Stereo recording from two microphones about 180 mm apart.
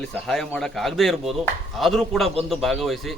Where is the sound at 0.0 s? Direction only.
5° left (ahead or behind).